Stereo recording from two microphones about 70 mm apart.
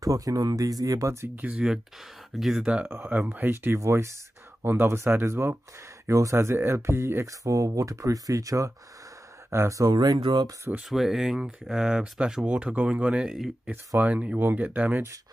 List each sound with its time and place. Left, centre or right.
0.0 s speech: right
1.5 s speech: centre
3.3 s speech: right
6.0 s speech: right
9.8 s speech: right
10.9 s speech: centre
13.7 s speech: right